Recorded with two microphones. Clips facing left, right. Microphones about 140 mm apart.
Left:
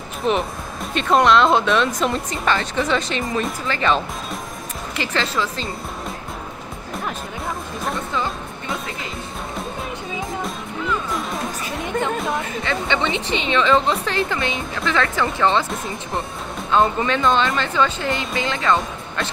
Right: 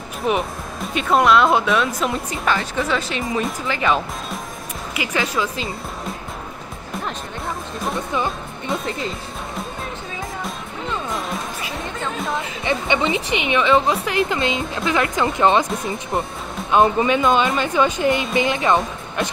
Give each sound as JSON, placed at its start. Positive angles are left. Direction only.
{"t": 0.2, "sound": "speech", "side_deg": -10}
{"t": 8.1, "sound": "music", "side_deg": -15}
{"t": 11.1, "sound": "music", "side_deg": 0}
{"t": 12.6, "sound": "speech", "side_deg": -15}
{"t": 16.7, "sound": "speech", "side_deg": -15}